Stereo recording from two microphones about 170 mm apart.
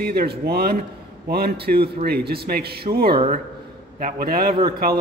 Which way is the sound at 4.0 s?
60° right (ahead or behind).